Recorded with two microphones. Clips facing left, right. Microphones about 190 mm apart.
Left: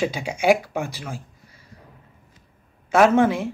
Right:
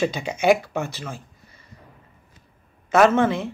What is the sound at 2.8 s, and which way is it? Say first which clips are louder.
Speech: left 1 dB; 10° left (ahead or behind).